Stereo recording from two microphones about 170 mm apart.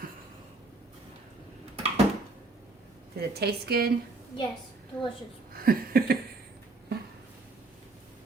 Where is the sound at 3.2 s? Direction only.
65° right (ahead or behind).